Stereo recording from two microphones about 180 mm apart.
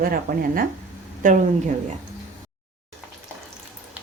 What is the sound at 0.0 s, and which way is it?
Speech, 55° right (ahead or behind).